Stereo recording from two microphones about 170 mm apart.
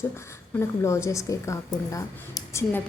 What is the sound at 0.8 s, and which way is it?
A woman's voice, 15° left (ahead or behind).